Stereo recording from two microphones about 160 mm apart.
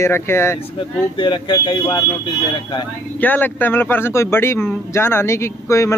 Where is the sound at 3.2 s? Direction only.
10° left (ahead or behind).